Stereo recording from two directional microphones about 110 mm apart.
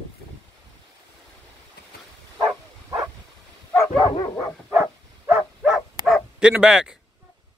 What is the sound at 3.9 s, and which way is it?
Dog, 45° left (ahead or behind).